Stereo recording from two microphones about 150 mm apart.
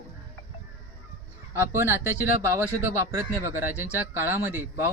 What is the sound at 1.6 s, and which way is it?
Speech, 15° right (ahead or behind).